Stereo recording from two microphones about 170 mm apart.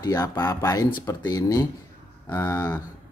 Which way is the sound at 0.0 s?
20° left (ahead or behind).